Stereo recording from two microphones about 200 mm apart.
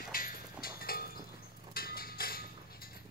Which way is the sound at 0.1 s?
45° left (ahead or behind).